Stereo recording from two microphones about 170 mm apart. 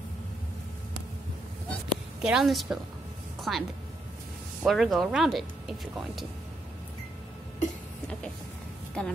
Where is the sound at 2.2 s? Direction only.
Centre (ahead or behind).